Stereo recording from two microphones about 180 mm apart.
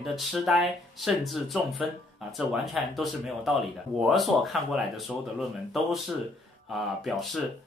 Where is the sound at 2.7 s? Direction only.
Centre (ahead or behind).